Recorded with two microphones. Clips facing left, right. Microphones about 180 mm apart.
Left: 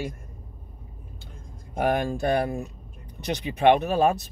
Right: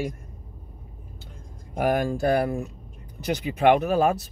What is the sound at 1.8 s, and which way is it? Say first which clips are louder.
Speech: right 1 dB; 25° left (ahead or behind).